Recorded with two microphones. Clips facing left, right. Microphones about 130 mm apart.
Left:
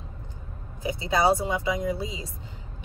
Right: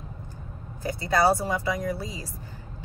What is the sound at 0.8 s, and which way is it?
Speech, 20° left (ahead or behind).